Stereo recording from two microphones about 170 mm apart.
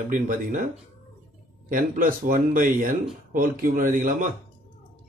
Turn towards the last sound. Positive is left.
turn(degrees=-50)  # may be behind; listen again after turning